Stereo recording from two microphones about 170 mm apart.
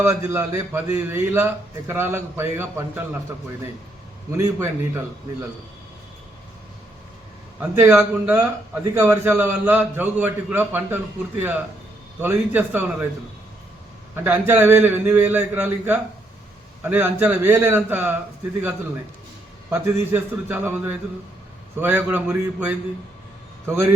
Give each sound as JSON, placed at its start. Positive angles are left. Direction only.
{"t": 0.0, "sound": "a man's voice", "side_deg": -15}
{"t": 4.3, "sound": "a man's voice", "side_deg": -15}
{"t": 7.8, "sound": "a man's voice", "side_deg": -15}
{"t": 14.3, "sound": "a man's voice", "side_deg": -10}
{"t": 19.7, "sound": "a man's voice", "side_deg": -10}